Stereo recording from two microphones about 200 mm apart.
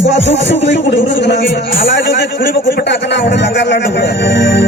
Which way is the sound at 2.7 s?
60° left (ahead or behind).